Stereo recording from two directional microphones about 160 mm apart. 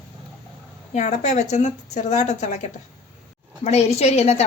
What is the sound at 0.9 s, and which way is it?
A woman's voice, 45° left (ahead or behind).